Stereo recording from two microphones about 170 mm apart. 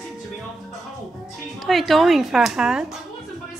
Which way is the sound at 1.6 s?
Centre (ahead or behind).